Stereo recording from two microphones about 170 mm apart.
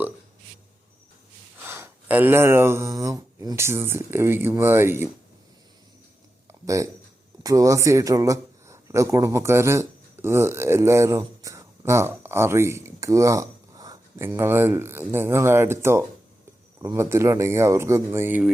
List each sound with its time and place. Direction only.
1.5 s speech: 15° right (ahead or behind)
6.5 s a sound: 20° right (ahead or behind)
7.4 s a man's voice: 20° right (ahead or behind)